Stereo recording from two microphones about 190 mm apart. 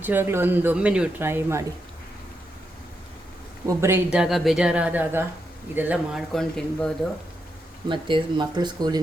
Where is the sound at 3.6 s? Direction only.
15° right (ahead or behind); by 6.9 s 5° left (ahead or behind).